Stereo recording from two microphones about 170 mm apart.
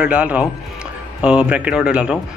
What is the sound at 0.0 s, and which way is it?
A man's voice, 5° right (ahead or behind).